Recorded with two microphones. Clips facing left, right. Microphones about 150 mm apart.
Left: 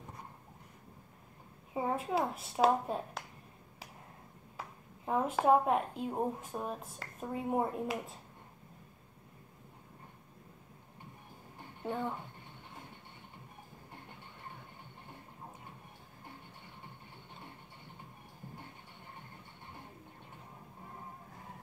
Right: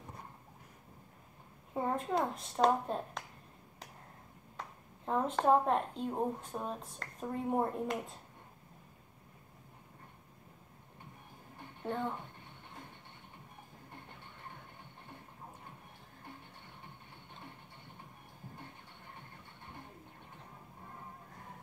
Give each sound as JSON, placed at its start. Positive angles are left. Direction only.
{"t": 1.7, "sound": "a woman's voice", "side_deg": 5}
{"t": 4.6, "sound": "a woman's voice", "side_deg": 5}
{"t": 11.8, "sound": "speech", "side_deg": 10}